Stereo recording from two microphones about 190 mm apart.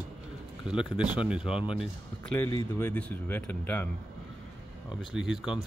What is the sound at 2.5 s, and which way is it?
Speech, 10° left (ahead or behind).